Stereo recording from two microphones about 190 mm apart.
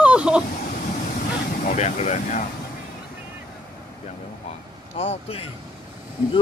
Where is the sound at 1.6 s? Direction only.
40° left (ahead or behind).